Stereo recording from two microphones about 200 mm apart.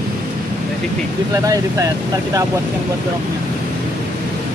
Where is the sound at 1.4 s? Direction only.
15° right (ahead or behind).